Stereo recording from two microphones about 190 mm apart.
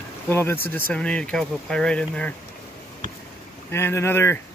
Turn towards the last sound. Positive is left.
turn(degrees=15)  # may be behind; listen again after turning